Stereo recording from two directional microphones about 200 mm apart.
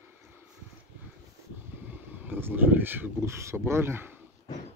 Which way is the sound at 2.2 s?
10° right (ahead or behind).